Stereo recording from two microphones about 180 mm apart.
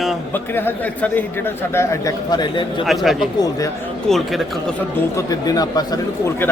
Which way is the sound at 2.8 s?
Centre (ahead or behind).